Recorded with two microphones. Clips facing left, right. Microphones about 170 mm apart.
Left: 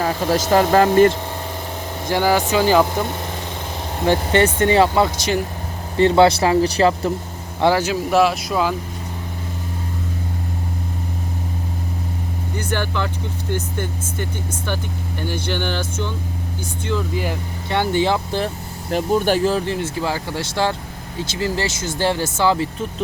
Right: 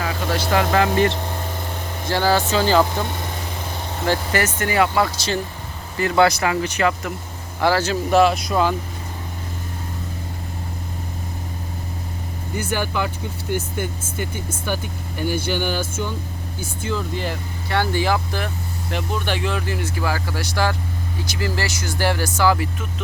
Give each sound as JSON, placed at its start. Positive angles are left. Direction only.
{"t": 0.0, "sound": "speech", "side_deg": 40}
{"t": 2.0, "sound": "speech", "side_deg": 15}
{"t": 4.0, "sound": "speech", "side_deg": 20}
{"t": 6.0, "sound": "speech", "side_deg": 30}
{"t": 7.6, "sound": "speech", "side_deg": 15}
{"t": 12.5, "sound": "speech", "side_deg": -10}
{"t": 17.2, "sound": "speech", "side_deg": 15}